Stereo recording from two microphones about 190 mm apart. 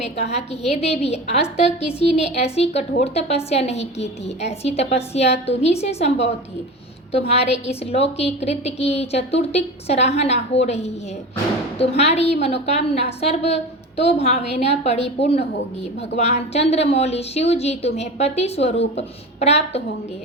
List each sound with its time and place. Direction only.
0.0 s a woman's voice: 35° left (ahead or behind)
7.1 s a woman's voice: 35° left (ahead or behind)